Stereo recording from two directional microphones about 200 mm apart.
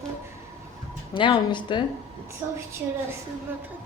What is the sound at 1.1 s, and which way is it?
Speech, 25° left (ahead or behind).